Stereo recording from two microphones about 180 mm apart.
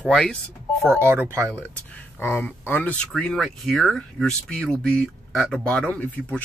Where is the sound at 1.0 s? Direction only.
15° right (ahead or behind).